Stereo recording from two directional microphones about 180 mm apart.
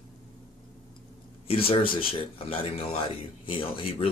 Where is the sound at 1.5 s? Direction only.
30° left (ahead or behind).